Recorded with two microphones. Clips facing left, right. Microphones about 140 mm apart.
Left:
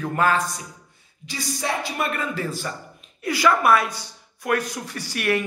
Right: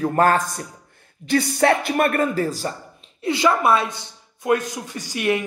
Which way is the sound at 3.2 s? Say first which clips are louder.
Right 1 dB; 25° right (ahead or behind).